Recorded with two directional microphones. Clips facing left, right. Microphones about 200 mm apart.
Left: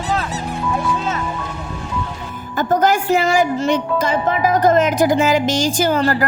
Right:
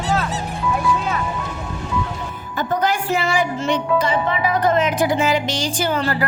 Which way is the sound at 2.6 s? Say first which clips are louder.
Left 5 dB; 45° left (ahead or behind).